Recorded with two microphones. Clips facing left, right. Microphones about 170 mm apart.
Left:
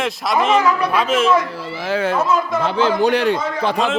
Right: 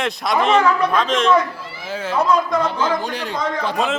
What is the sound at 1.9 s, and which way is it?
Speech, 65° left (ahead or behind).